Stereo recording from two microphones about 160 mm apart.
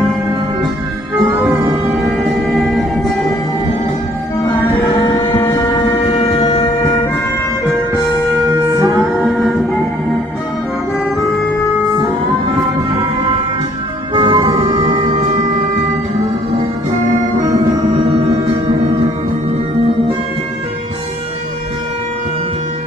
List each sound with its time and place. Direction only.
1.9 s music: centre (ahead or behind)
4.9 s music: 30° left (ahead or behind)
8.7 s music: 20° right (ahead or behind)
14.1 s siren: 30° right (ahead or behind)